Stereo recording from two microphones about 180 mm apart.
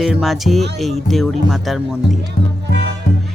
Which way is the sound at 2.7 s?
80° right.